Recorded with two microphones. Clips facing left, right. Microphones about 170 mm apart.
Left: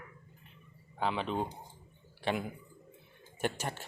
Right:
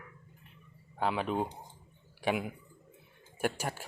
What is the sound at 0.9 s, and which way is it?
Speech, 5° right (ahead or behind).